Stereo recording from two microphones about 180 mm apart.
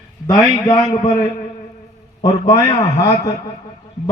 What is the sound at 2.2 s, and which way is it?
A man's voice, 15° left (ahead or behind).